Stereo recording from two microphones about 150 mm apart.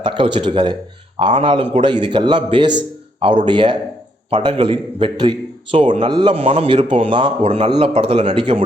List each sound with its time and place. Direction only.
0.0 s a man's voice: 35° right (ahead or behind)